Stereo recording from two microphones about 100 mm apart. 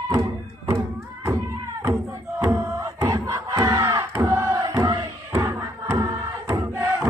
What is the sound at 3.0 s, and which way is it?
Crowd, 35° right (ahead or behind).